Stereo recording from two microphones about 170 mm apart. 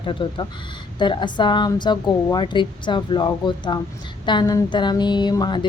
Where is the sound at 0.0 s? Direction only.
30° left (ahead or behind).